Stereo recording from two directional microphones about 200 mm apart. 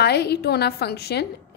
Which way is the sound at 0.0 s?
55° left (ahead or behind).